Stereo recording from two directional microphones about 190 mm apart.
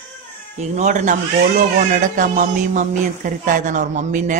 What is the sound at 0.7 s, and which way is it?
Speech, 40° right (ahead or behind).